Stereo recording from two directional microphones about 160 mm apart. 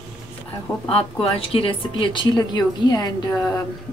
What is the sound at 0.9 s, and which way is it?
Speech, 35° left (ahead or behind).